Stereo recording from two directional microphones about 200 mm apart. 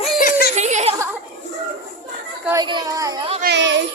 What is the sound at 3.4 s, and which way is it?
Speech, 65° right (ahead or behind).